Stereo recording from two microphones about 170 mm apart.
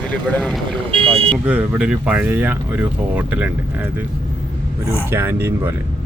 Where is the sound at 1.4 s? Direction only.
5° right (ahead or behind).